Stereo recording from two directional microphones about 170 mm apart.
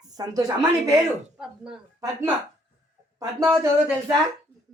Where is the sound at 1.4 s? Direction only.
5° right (ahead or behind).